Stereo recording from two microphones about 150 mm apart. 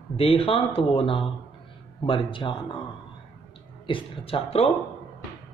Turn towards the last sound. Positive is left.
turn(degrees=35)  # may be behind; listen again after turning